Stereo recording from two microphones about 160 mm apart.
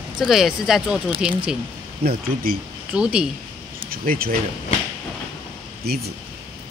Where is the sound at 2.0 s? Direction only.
70° right (ahead or behind).